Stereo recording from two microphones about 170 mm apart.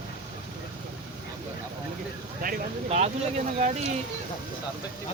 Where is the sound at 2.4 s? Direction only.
45° right (ahead or behind).